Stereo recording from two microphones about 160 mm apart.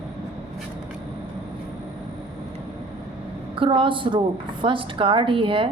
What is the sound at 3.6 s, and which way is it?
A woman's voice, 30° right (ahead or behind).